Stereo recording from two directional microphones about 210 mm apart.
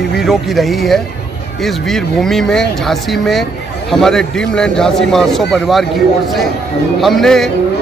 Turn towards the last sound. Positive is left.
turn(degrees=0)  # may be behind; listen again after turning